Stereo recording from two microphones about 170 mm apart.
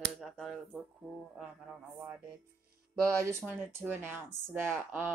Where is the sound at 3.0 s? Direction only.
15° right (ahead or behind).